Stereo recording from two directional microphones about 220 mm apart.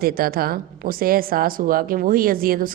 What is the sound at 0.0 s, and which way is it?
A woman's voice, 40° right (ahead or behind).